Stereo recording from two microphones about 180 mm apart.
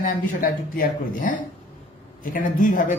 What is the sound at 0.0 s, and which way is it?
Speech, 50° left (ahead or behind).